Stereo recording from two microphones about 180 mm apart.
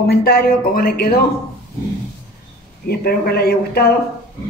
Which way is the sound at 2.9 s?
60° left (ahead or behind).